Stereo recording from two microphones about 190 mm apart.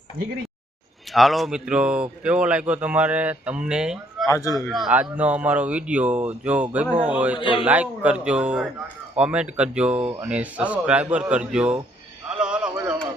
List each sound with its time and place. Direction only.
1.1 s speech: centre (ahead or behind)
4.3 s a man's voice: 15° left (ahead or behind)
4.7 s speech: 5° right (ahead or behind)
7.3 s speech: 25° left (ahead or behind)
7.6 s speech: 5° right (ahead or behind)
12.4 s a sound: 5° right (ahead or behind)